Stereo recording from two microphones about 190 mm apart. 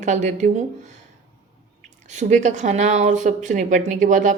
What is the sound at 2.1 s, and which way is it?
Speech, 40° right (ahead or behind).